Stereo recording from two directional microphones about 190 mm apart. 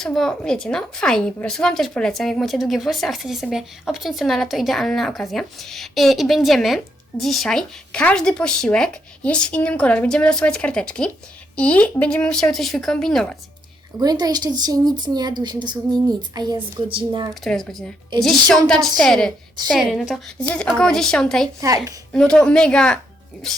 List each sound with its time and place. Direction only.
0.0 s a woman's voice: centre (ahead or behind)
14.0 s speech: 20° right (ahead or behind)
17.4 s a woman's voice: centre (ahead or behind)